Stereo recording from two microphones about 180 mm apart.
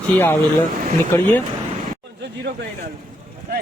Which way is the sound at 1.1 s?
10° left (ahead or behind).